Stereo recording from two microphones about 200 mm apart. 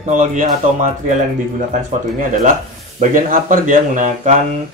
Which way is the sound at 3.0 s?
40° right (ahead or behind).